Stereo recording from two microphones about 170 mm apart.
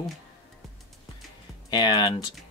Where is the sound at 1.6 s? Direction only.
25° left (ahead or behind).